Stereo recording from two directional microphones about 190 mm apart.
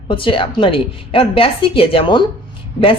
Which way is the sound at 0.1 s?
25° left (ahead or behind).